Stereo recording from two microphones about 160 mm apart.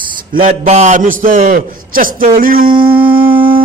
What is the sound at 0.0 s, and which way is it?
Mantra, 60° right (ahead or behind).